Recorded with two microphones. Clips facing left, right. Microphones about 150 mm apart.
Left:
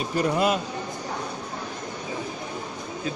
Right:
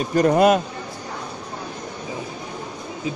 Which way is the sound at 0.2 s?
50° right (ahead or behind).